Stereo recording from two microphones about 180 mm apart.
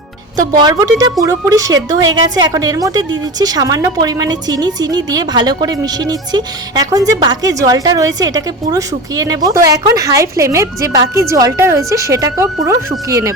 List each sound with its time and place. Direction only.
0.3 s a woman's voice: 25° right (ahead or behind)